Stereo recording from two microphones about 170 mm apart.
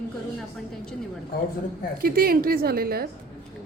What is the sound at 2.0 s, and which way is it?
A woman's voice, 60° right (ahead or behind).